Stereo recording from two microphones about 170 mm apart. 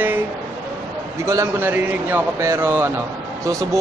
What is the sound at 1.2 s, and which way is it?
Speech, 15° right (ahead or behind).